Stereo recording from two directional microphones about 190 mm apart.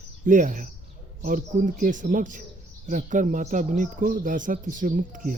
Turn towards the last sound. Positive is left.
turn(degrees=-45)  # may be behind; listen again after turning